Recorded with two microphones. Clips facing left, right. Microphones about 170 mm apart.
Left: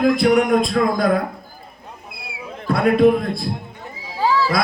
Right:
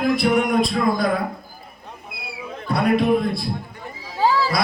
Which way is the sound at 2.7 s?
50° left (ahead or behind).